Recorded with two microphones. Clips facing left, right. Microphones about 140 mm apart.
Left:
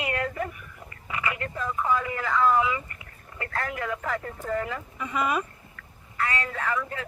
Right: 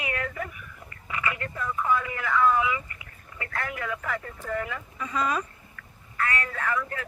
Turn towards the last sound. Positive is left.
turn(degrees=25)  # may be behind; listen again after turning